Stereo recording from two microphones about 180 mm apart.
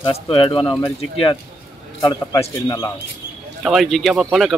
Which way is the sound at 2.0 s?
20° left (ahead or behind).